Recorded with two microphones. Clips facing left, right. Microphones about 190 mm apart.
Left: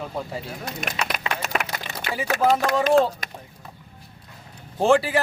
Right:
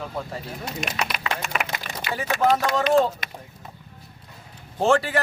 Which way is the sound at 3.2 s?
45° left (ahead or behind).